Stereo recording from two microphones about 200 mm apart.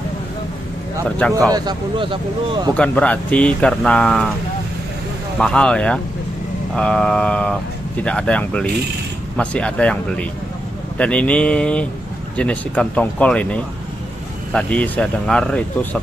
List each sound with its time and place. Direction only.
1.5 s speech: 20° right (ahead or behind)
2.7 s speech: 5° left (ahead or behind)
5.4 s speech: 5° left (ahead or behind)